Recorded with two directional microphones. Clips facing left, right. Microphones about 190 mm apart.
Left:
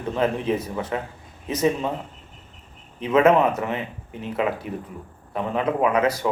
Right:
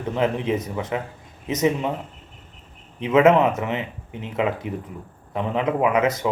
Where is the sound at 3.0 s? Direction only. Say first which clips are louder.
Right 1 dB; 20° right (ahead or behind).